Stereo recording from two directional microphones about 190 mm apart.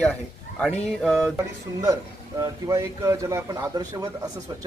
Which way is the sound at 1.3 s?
20° right (ahead or behind).